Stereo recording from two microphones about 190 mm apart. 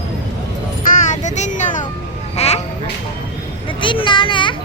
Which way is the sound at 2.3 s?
35° left (ahead or behind).